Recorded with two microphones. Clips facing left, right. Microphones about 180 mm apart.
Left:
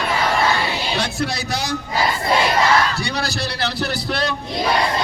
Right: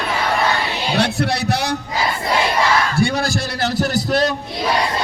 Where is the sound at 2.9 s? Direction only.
50° right (ahead or behind).